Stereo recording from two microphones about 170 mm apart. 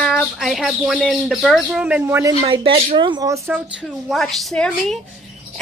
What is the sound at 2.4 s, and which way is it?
Speech, 30° right (ahead or behind).